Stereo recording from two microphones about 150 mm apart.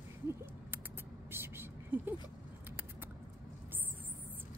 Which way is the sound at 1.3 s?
15° right (ahead or behind).